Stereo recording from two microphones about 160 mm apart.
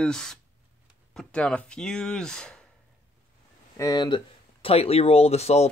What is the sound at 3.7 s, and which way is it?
Speech, 25° left (ahead or behind).